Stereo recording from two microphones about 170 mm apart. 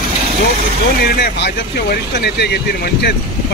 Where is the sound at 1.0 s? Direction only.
65° left (ahead or behind).